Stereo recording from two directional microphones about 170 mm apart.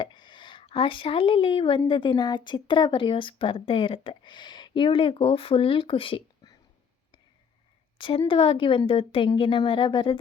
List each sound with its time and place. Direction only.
0.0 s speech: 25° left (ahead or behind)
7.9 s a woman's voice: 30° left (ahead or behind)